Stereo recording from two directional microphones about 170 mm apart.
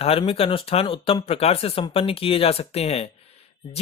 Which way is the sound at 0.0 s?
35° left (ahead or behind).